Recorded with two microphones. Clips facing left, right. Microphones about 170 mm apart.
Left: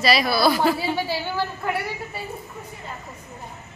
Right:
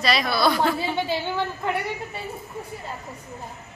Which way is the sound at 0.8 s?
20° right (ahead or behind).